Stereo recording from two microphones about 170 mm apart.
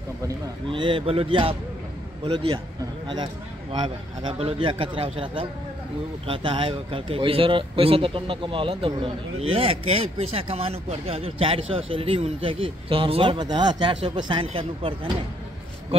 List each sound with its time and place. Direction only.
0.7 s speech: 30° right (ahead or behind)
3.7 s speech: 25° right (ahead or behind)